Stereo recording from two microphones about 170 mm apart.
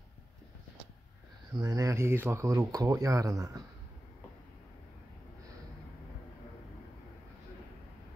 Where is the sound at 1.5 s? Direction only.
20° right (ahead or behind).